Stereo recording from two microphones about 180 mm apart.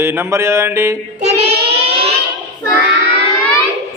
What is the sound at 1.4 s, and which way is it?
Child singing, 35° right (ahead or behind).